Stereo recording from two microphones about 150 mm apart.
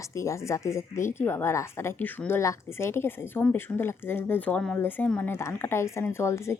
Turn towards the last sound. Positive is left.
turn(degrees=20)  # may be behind; listen again after turning